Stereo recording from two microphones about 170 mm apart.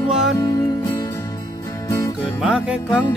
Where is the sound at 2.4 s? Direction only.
5° right (ahead or behind).